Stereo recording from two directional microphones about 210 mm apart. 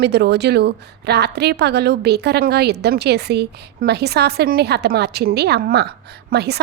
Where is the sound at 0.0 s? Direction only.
50° right (ahead or behind).